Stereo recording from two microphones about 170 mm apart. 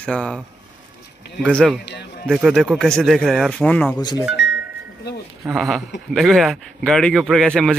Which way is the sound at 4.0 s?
25° left (ahead or behind).